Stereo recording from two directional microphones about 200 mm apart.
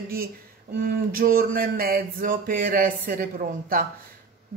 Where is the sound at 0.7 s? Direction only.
45° right (ahead or behind).